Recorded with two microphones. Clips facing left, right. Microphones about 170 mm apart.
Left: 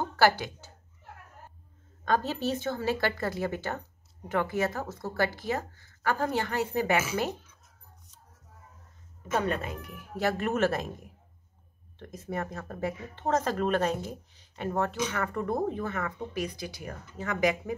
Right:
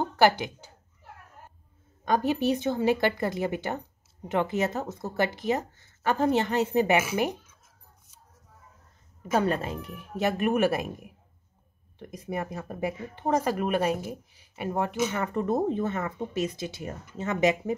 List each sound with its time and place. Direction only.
0.0 s speech: 20° right (ahead or behind)
2.0 s a woman's voice: 15° right (ahead or behind)
9.3 s a woman's voice: 30° right (ahead or behind)